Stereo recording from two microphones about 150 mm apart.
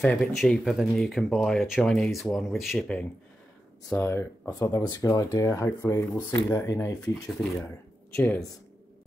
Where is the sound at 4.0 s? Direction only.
20° left (ahead or behind).